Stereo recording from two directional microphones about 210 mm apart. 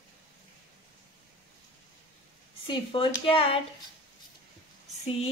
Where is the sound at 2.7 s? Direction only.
25° left (ahead or behind).